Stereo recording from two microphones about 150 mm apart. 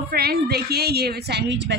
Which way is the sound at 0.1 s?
90° right.